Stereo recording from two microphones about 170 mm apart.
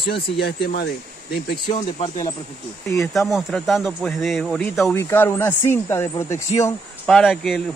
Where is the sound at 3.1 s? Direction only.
Centre (ahead or behind).